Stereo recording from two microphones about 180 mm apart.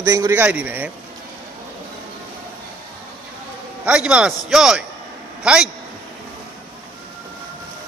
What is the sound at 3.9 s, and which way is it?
Speech, 5° right (ahead or behind).